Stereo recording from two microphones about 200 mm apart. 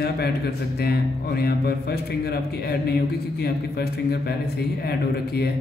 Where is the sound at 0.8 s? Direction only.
55° left (ahead or behind).